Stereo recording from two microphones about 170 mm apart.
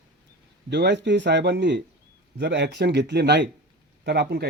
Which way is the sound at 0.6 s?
90° right.